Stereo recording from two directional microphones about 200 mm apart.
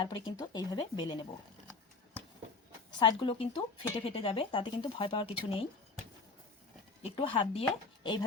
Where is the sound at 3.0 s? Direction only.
25° left (ahead or behind).